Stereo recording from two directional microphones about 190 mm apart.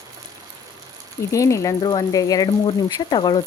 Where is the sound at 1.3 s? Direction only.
15° left (ahead or behind).